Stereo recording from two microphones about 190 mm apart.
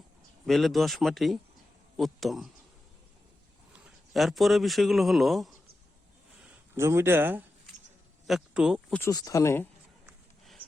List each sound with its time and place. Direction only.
0.4 s speech: centre (ahead or behind)
3.7 s a man's voice: 5° right (ahead or behind)
6.4 s a man's voice: 15° right (ahead or behind)
9.0 s speech: 15° left (ahead or behind)
10.1 s horse: centre (ahead or behind)